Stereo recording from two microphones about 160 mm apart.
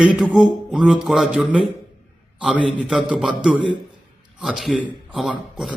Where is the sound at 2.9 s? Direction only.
5° right (ahead or behind).